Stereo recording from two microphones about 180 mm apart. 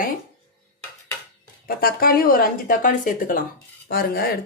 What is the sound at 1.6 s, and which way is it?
Speech, 55° left (ahead or behind).